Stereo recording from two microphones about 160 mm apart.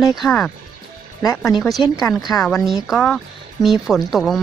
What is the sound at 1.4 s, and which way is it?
Speech, centre (ahead or behind).